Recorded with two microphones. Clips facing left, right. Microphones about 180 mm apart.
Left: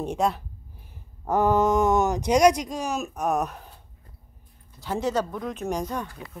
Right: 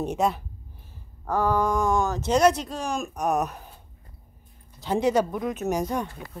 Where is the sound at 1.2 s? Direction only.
20° left (ahead or behind); by 3.6 s centre (ahead or behind).